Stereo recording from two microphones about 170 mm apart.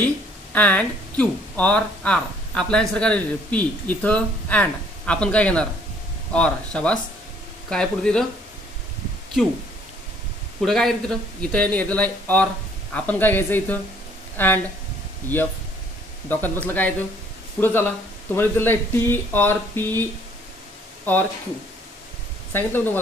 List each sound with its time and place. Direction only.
0.0 s speech: 10° left (ahead or behind)
10.6 s speech: centre (ahead or behind)
22.5 s speech: 10° left (ahead or behind)